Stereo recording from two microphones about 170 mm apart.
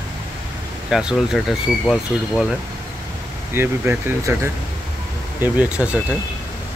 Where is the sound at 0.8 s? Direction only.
5° right (ahead or behind).